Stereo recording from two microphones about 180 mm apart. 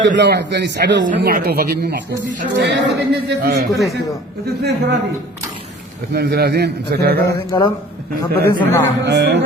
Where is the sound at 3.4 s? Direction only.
55° right (ahead or behind).